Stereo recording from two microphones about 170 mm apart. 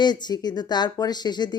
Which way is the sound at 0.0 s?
25° left (ahead or behind).